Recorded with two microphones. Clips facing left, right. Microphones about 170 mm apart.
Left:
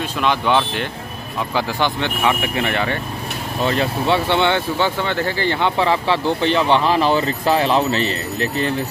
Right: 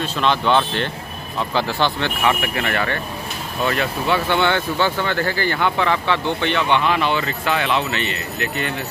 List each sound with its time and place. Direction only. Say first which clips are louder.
0.0 s speech: even; 10° left (ahead or behind)
3.6 s speech: left 2 dB; 30° left (ahead or behind)